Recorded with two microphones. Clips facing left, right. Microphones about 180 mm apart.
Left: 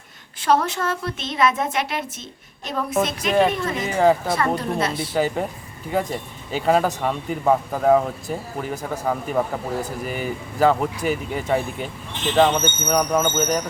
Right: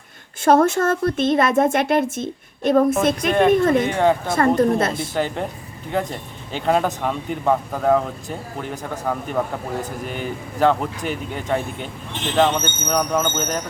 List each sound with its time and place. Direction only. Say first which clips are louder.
0.4 s a woman's voice: right 5 dB; 50° right (ahead or behind)
3.8 s speech: even; 5° left (ahead or behind)
4.4 s speech: right 6 dB; 50° right (ahead or behind)
5.1 s speech: left 1 dB; 5° left (ahead or behind)